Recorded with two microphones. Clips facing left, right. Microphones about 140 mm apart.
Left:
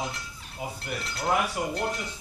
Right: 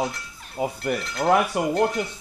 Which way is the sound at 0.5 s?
55° right (ahead or behind).